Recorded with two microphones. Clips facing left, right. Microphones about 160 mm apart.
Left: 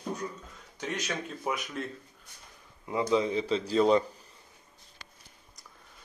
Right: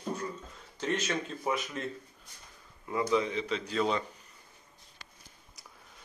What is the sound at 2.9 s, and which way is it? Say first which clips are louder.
A man's voice: left 2 dB; 25° left (ahead or behind).